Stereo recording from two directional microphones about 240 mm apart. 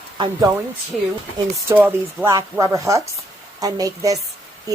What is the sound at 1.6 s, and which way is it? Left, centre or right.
Speech, centre.